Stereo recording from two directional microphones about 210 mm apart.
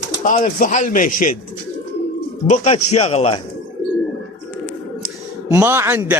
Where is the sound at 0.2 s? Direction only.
35° left (ahead or behind).